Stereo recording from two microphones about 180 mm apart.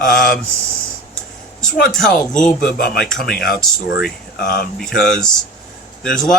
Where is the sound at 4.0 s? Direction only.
60° left (ahead or behind).